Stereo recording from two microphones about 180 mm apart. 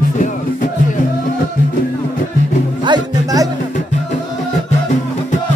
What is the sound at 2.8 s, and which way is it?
Music, 20° right (ahead or behind).